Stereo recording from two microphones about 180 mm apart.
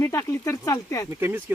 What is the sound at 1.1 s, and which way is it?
Speech, 10° right (ahead or behind).